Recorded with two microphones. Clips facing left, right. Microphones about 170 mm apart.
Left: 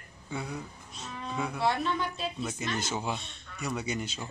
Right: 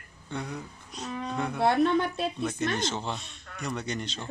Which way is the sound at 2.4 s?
5° left (ahead or behind).